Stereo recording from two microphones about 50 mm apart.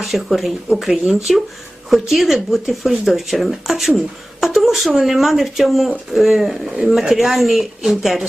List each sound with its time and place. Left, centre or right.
0.0 s speech: centre